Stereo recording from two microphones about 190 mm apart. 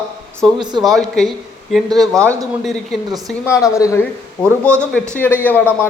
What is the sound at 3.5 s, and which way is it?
Speech, 15° left (ahead or behind).